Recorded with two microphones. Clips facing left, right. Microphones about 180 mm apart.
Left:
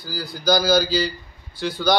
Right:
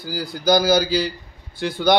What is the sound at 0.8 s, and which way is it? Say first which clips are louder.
Speech: right 1 dB; 55° right (ahead or behind).